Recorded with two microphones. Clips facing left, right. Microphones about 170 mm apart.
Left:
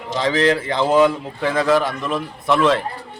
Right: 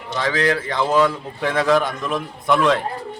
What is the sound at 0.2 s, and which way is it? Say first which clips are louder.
Speech: left 3 dB; 20° left (ahead or behind).